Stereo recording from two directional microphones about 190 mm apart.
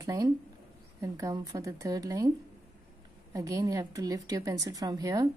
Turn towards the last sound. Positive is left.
turn(degrees=-20)  # may be behind; listen again after turning